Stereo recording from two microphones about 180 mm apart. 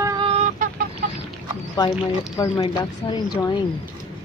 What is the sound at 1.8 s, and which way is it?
Speech, 20° left (ahead or behind).